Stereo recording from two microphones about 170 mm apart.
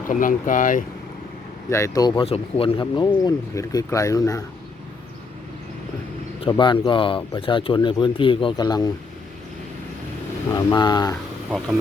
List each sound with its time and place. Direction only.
0.1 s speech: 50° left (ahead or behind)
1.7 s speech: 20° left (ahead or behind)
6.5 s speech: 30° left (ahead or behind)
10.5 s speech: 25° left (ahead or behind)